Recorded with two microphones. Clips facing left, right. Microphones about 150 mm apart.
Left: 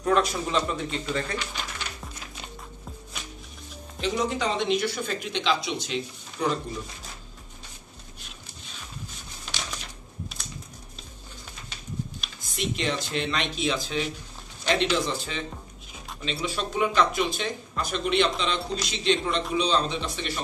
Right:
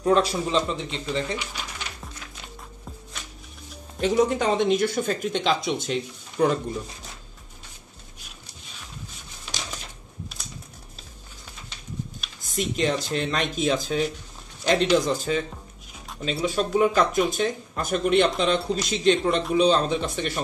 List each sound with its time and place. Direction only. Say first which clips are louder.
0.0 s speech: right 3 dB; 30° right (ahead or behind); by 1.7 s 10° right (ahead or behind)
4.0 s speech: right 6 dB; 50° right (ahead or behind)
12.4 s speech: right 5 dB; 45° right (ahead or behind)
16.4 s speech: right 6 dB; 40° right (ahead or behind)